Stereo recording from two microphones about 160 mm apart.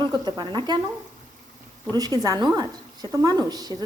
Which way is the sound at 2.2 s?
25° right (ahead or behind).